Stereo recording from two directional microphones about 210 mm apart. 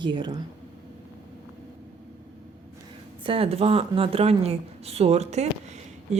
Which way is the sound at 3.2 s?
25° right (ahead or behind).